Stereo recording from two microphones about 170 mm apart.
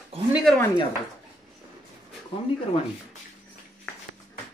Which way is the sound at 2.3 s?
30° left (ahead or behind).